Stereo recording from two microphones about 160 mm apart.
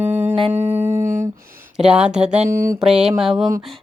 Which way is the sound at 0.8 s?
10° right (ahead or behind).